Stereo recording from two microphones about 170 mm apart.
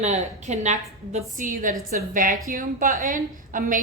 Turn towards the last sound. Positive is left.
turn(degrees=-50)  # may be behind; listen again after turning